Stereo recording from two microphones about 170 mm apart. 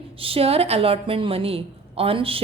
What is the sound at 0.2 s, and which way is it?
A woman's voice, 35° right (ahead or behind).